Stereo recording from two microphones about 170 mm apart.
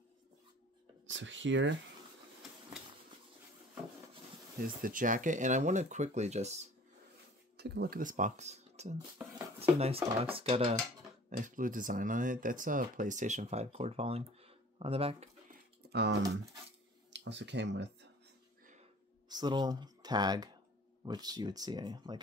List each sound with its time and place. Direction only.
1.0 s speech: 90° right
4.8 s speech: 50° right (ahead or behind)
7.5 s speech: 75° right (ahead or behind); by 8.9 s 40° right (ahead or behind)
8.9 s speech: 20° right (ahead or behind)
9.6 s speech: 35° right (ahead or behind)
11.2 s speech: 50° right (ahead or behind); by 15.2 s 35° right (ahead or behind)
15.9 s speech: 85° right
19.2 s speech: 25° right (ahead or behind)